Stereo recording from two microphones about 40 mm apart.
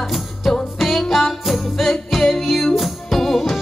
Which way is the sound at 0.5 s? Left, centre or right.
Centre.